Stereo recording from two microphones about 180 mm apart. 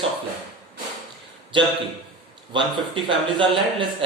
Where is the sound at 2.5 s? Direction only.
25° right (ahead or behind).